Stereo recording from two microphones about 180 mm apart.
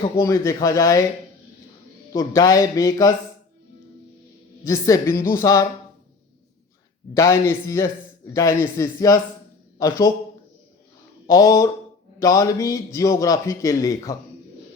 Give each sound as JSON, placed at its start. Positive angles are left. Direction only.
{"t": 0.2, "sound": "a man's voice", "side_deg": 15}
{"t": 2.1, "sound": "a man's voice", "side_deg": 20}
{"t": 4.6, "sound": "a man's voice", "side_deg": 15}
{"t": 7.1, "sound": "a man's voice", "side_deg": 15}
{"t": 11.3, "sound": "a man's voice", "side_deg": 20}